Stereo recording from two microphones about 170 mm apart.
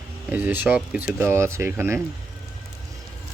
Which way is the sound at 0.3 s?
10° right (ahead or behind).